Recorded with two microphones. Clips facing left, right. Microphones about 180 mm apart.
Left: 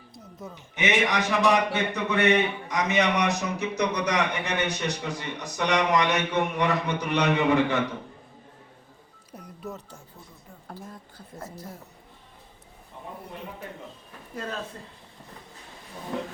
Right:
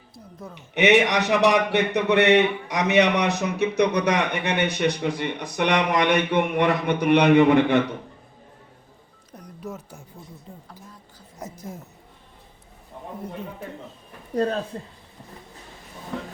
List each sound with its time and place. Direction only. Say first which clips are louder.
0.1 s speech: right 1 dB; centre (ahead or behind)
0.7 s a man's voice: right 7 dB; 65° right (ahead or behind)
9.4 s music: right 2 dB; centre (ahead or behind)
11.4 s speech: right 4 dB; 20° right (ahead or behind)
14.3 s speech: right 11 dB; 35° right (ahead or behind)